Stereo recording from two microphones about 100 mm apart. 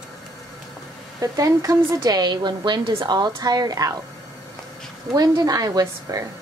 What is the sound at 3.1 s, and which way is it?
Speech, 45° right (ahead or behind).